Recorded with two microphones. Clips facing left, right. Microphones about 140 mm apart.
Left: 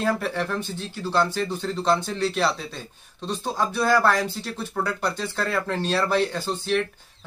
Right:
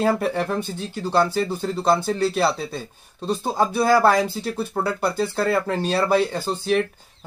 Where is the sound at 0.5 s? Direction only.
10° right (ahead or behind).